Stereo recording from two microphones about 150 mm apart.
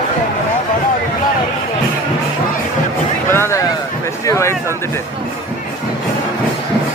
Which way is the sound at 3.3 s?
20° left (ahead or behind).